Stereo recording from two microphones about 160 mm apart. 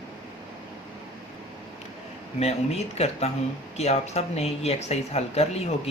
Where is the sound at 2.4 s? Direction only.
40° left (ahead or behind).